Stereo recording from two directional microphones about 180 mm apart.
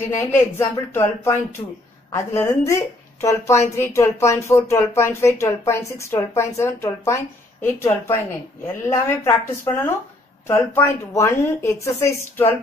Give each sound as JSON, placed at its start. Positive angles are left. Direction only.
{"t": 0.2, "sound": "speech", "side_deg": 15}